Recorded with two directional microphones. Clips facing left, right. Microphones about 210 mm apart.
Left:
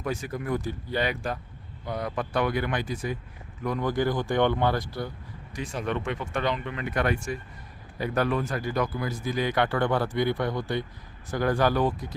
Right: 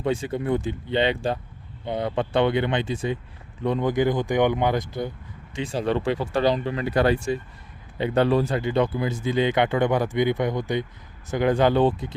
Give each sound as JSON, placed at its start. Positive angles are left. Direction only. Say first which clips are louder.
{"t": 0.0, "sound": "speech", "louder": "right 6 dB", "side_deg": -30}
{"t": 5.7, "sound": "speech", "louder": "right 7 dB", "side_deg": -30}